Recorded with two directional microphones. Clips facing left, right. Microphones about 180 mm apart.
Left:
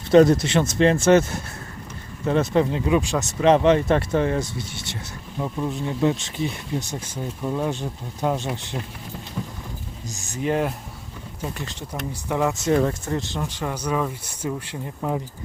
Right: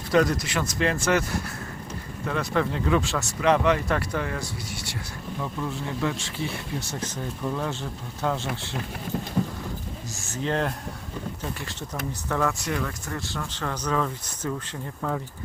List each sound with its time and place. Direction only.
0.1 s speech: 25° left (ahead or behind)
9.4 s vehicle: 40° right (ahead or behind)
10.2 s speech: 15° left (ahead or behind)
12.3 s speech: 20° left (ahead or behind)
12.7 s speech: 35° left (ahead or behind)
13.1 s speech: 20° left (ahead or behind)